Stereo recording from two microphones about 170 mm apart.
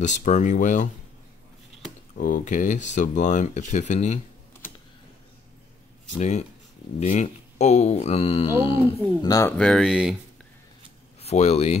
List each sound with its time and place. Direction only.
0.0 s speech: 45° left (ahead or behind)
2.1 s speech: 50° left (ahead or behind)
6.1 s speech: 40° left (ahead or behind)
9.3 s speech: 20° left (ahead or behind)
9.6 s speech: centre (ahead or behind)
11.1 s speech: 40° left (ahead or behind)